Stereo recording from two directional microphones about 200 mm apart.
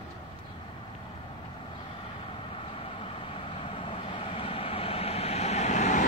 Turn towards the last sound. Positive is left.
turn(degrees=35)  # may be behind; listen again after turning